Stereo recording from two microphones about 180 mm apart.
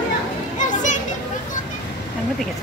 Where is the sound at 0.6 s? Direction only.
45° left (ahead or behind).